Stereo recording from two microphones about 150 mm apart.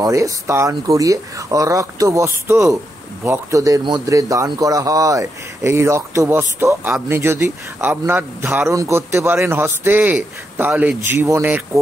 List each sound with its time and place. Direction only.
0.0 s a man's voice: 20° right (ahead or behind)